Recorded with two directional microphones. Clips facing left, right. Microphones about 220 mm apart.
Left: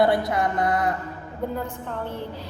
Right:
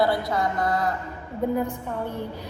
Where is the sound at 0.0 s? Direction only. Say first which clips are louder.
Left 2 dB; 20° left (ahead or behind).